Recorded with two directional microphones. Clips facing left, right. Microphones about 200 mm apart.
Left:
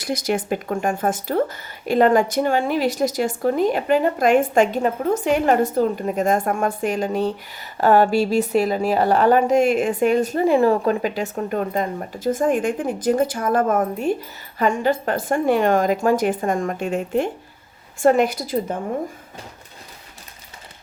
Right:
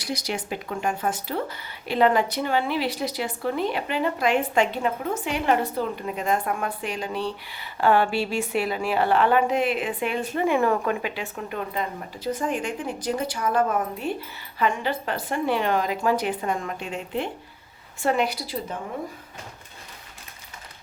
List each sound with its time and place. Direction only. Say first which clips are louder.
0.0 s speech: left 7 dB; 50° left (ahead or behind)